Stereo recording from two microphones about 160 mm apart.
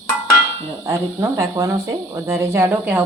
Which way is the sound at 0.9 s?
15° right (ahead or behind).